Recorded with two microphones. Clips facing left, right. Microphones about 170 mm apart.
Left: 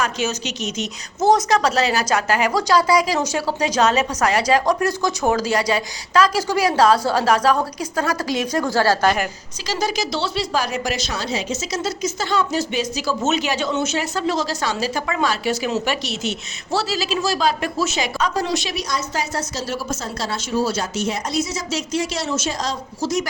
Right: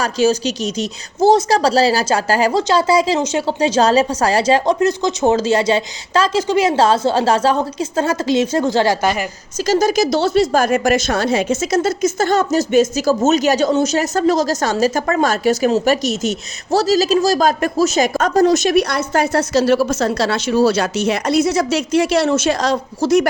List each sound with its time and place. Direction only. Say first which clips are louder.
0.0 s a woman's voice: right 8 dB; 35° right (ahead or behind); by 9.0 s 20° right (ahead or behind)
9.6 s a woman's voice: right 9 dB; 45° right (ahead or behind)